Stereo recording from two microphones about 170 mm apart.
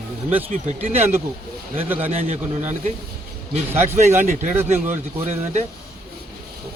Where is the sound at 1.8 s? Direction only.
10° right (ahead or behind).